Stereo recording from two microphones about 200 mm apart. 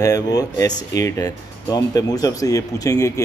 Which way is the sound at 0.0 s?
20° left (ahead or behind).